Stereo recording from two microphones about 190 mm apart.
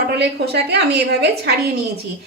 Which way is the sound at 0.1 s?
60° right (ahead or behind).